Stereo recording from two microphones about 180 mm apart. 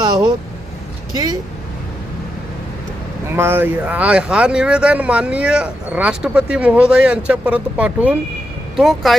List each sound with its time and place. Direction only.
1.1 s speech: 20° right (ahead or behind)
3.3 s speech: 15° right (ahead or behind)